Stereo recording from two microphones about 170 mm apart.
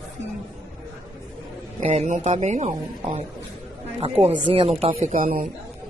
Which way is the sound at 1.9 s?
40° right (ahead or behind).